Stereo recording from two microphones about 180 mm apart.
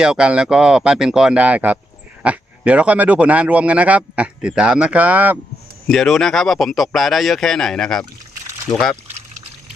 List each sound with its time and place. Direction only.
0.0 s speech: 5° right (ahead or behind)
5.9 s speech: centre (ahead or behind)
8.7 s speech: 20° left (ahead or behind)